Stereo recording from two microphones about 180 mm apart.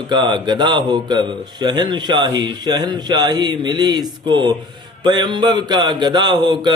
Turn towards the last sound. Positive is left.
turn(degrees=-25)  # may be behind; listen again after turning